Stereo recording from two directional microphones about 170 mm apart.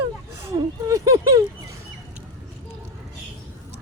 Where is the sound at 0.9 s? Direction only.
20° right (ahead or behind).